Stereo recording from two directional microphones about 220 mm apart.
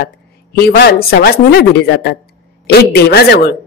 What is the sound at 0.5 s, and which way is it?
Speech, 45° left (ahead or behind).